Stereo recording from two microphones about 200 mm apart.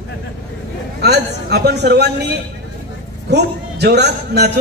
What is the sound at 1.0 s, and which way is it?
A man's voice, 55° right (ahead or behind).